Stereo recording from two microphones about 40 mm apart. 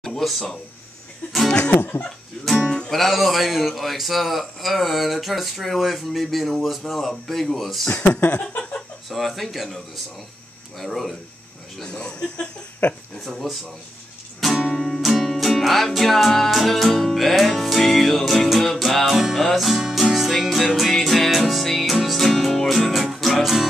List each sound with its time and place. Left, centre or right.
0.0 s a sound: centre
1.7 s music: left
2.4 s speech: centre
2.9 s a man's voice: centre
8.3 s a sound: left
9.1 s a man's voice: centre
10.8 s a man's voice: centre
11.8 s speech: left
12.8 s speech: left
13.2 s a man's voice: centre
14.4 s music: centre